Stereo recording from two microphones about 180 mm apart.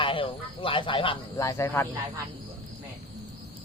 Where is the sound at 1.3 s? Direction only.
15° left (ahead or behind).